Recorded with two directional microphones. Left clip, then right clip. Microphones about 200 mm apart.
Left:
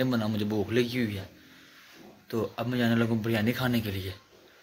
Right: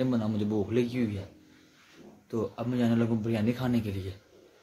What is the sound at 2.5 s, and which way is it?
Speech, 5° right (ahead or behind).